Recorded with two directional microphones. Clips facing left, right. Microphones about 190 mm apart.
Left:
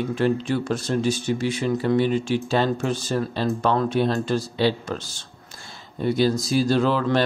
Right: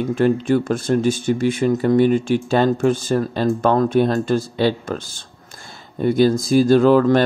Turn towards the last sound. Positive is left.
turn(degrees=-50)  # may be behind; listen again after turning